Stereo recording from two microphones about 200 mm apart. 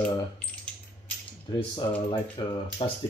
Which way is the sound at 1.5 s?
20° left (ahead or behind).